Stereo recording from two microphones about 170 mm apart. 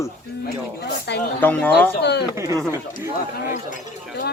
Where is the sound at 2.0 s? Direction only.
80° left.